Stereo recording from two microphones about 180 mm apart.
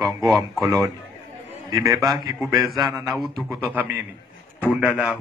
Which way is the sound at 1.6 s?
20° right (ahead or behind).